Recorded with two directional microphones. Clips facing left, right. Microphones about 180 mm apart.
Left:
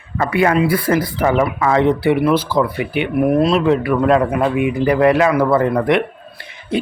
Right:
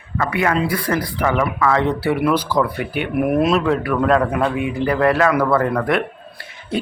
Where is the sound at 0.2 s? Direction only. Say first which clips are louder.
Left 4 dB; 30° left (ahead or behind).